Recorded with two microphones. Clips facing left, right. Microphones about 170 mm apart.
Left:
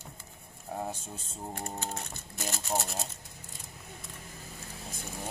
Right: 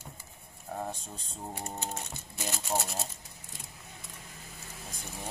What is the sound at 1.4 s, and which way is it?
Speech, centre (ahead or behind).